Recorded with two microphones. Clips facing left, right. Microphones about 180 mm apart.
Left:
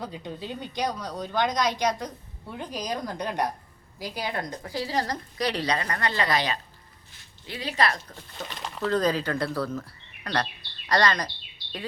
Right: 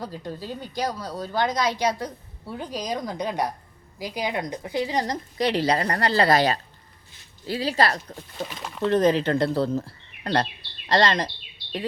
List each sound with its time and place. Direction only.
0.0 s a woman's voice: centre (ahead or behind); by 8.1 s 35° right (ahead or behind)
8.4 s speech: 5° right (ahead or behind)
8.8 s a woman's voice: 25° right (ahead or behind)